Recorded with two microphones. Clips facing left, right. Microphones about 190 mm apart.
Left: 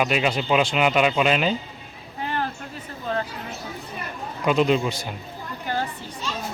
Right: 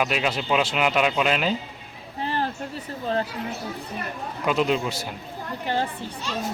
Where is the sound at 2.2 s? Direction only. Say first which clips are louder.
Right 1 dB; 30° right (ahead or behind).